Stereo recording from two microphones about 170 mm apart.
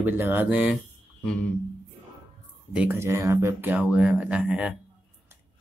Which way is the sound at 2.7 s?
10° right (ahead or behind).